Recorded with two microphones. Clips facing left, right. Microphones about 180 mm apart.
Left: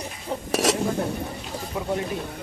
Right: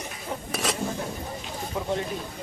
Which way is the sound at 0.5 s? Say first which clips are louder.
Left 8 dB; 90° left.